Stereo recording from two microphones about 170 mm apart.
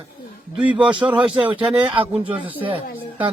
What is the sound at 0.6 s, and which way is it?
Speech, 5° right (ahead or behind).